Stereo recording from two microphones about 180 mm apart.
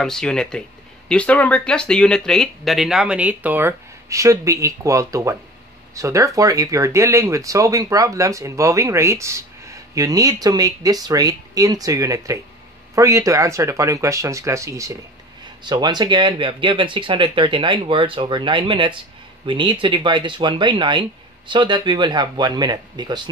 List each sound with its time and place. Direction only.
0.0 s speech: 5° left (ahead or behind); by 23.3 s 25° right (ahead or behind)